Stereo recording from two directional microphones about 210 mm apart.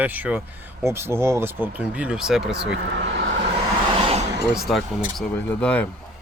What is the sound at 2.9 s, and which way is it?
Speech, 55° right (ahead or behind).